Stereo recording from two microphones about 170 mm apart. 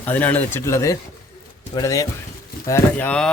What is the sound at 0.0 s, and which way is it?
Speech, 10° left (ahead or behind).